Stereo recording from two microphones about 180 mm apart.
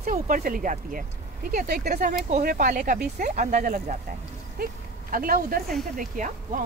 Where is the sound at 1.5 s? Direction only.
60° right (ahead or behind).